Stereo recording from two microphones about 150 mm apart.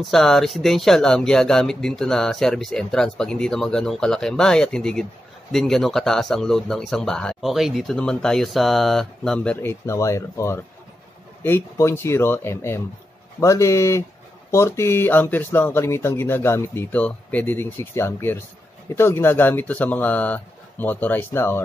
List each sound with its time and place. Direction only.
0.0 s a man's voice: centre (ahead or behind)